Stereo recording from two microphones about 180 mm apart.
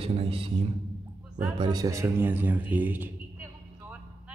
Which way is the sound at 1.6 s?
20° right (ahead or behind).